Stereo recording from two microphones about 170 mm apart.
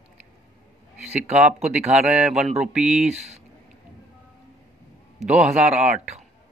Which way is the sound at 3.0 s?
40° right (ahead or behind).